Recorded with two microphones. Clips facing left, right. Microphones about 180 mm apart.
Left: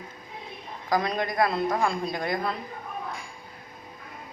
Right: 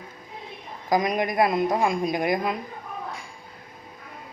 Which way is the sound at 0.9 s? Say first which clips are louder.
Right 3 dB; 15° right (ahead or behind).